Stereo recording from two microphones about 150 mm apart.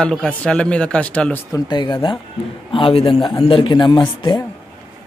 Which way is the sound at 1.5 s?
30° left (ahead or behind).